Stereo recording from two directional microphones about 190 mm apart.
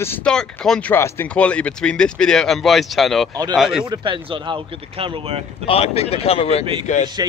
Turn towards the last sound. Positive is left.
turn(degrees=40)  # may be behind; listen again after turning